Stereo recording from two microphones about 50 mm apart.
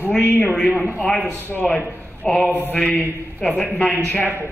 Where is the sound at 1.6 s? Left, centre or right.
Left.